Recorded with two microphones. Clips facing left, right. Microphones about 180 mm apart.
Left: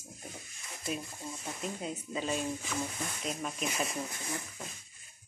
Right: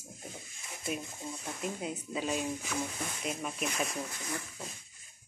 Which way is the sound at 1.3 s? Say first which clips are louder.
Right 1 dB; 5° right (ahead or behind).